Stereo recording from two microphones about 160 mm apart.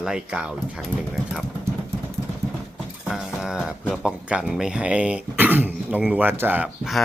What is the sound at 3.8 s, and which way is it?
Speech, 5° right (ahead or behind).